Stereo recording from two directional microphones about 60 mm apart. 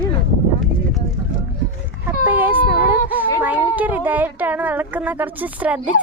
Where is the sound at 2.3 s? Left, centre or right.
Right.